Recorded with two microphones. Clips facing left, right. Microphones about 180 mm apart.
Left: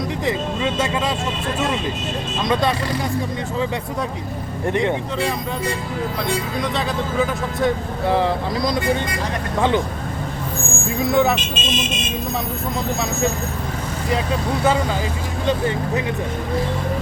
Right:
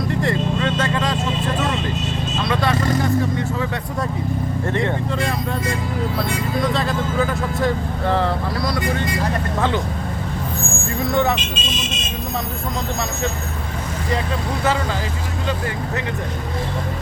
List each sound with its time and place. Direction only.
0.2 s speech: 5° left (ahead or behind)
2.4 s speech: 20° left (ahead or behind)
4.6 s speech: 15° left (ahead or behind)
6.6 s speech: centre (ahead or behind)
8.0 s speech: 15° left (ahead or behind)
11.0 s speech: 5° left (ahead or behind)